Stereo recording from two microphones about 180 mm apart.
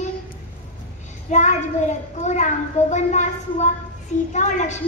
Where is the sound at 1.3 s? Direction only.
40° left (ahead or behind).